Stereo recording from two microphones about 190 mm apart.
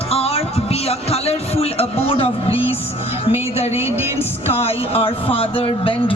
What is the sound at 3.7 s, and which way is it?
Speech, 10° right (ahead or behind).